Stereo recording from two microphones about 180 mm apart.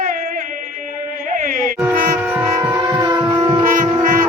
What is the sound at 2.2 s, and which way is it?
Music, 10° right (ahead or behind).